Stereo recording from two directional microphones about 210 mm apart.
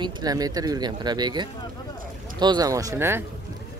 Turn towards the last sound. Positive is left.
turn(degrees=-10)  # may be behind; listen again after turning